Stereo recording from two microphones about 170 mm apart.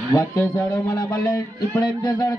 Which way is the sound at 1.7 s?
25° left (ahead or behind).